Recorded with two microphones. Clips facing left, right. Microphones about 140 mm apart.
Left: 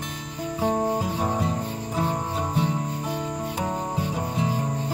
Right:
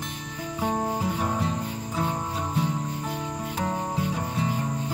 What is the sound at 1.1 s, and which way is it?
Music, 30° left (ahead or behind).